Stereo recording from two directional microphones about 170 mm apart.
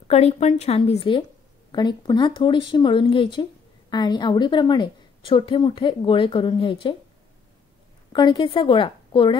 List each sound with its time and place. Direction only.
0.1 s a woman's voice: 35° left (ahead or behind)
8.1 s a woman's voice: 25° left (ahead or behind)